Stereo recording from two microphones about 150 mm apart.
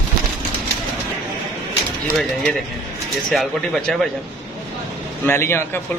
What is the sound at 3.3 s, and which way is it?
Speech, centre (ahead or behind).